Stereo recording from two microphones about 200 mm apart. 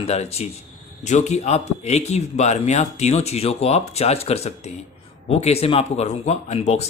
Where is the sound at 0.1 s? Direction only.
30° left (ahead or behind).